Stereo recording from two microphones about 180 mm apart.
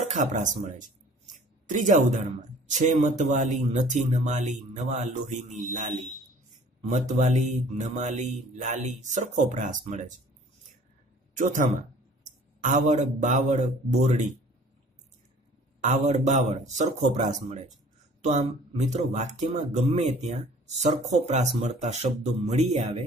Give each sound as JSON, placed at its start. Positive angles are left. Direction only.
{"t": 0.0, "sound": "speech", "side_deg": -40}
{"t": 7.1, "sound": "speech", "side_deg": -40}
{"t": 11.3, "sound": "speech", "side_deg": -45}
{"t": 15.8, "sound": "speech", "side_deg": -40}
{"t": 18.9, "sound": "speech", "side_deg": -40}